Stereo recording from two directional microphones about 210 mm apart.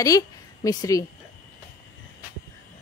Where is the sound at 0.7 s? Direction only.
15° left (ahead or behind).